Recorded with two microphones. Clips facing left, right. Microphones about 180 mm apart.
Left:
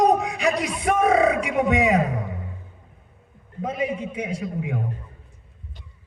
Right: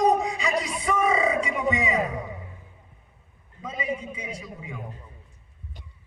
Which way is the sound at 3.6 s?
65° left (ahead or behind).